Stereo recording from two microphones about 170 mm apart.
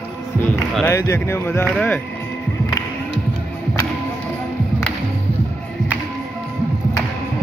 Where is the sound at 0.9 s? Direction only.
15° left (ahead or behind).